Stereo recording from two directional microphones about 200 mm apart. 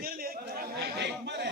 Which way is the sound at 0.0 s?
50° right (ahead or behind).